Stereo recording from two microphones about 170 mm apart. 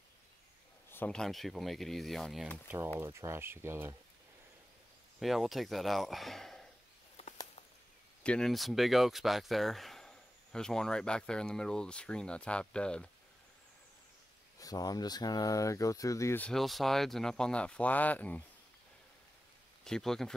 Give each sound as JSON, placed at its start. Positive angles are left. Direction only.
{"t": 0.8, "sound": "speech", "side_deg": 10}
{"t": 3.0, "sound": "speech", "side_deg": -15}
{"t": 5.2, "sound": "speech", "side_deg": 0}
{"t": 8.2, "sound": "speech", "side_deg": 5}
{"t": 14.6, "sound": "speech", "side_deg": 20}
{"t": 16.4, "sound": "speech", "side_deg": 0}
{"t": 19.8, "sound": "speech", "side_deg": 5}